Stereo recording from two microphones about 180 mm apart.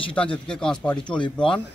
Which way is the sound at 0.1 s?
5° left (ahead or behind).